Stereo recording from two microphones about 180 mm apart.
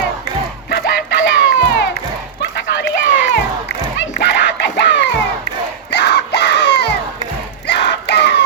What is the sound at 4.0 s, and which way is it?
Music, 75° left (ahead or behind).